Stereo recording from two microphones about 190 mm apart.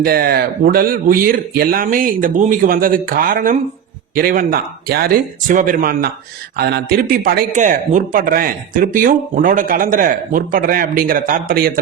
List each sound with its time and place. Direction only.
0.0 s a man's voice: 55° right (ahead or behind)